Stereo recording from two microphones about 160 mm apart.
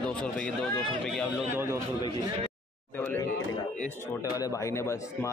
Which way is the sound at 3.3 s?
50° left (ahead or behind).